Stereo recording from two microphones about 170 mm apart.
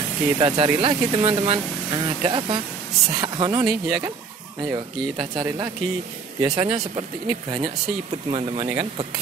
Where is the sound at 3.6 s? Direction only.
Centre (ahead or behind).